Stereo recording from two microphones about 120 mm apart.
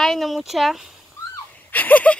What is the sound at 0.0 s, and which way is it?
Speech, centre (ahead or behind).